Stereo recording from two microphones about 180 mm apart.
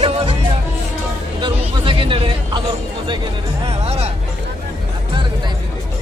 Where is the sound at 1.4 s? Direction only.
25° right (ahead or behind).